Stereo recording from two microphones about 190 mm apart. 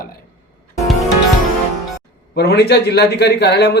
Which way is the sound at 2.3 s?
60° left (ahead or behind).